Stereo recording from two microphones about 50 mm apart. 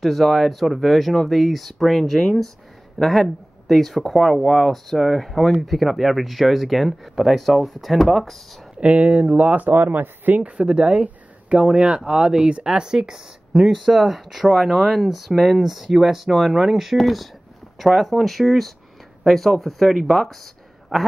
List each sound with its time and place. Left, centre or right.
0.0 s speech: centre
8.7 s speech: right
10.6 s speech: right; by 20.3 s centre